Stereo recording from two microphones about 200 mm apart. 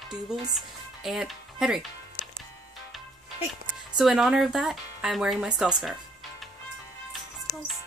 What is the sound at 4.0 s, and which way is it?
Speech, centre (ahead or behind).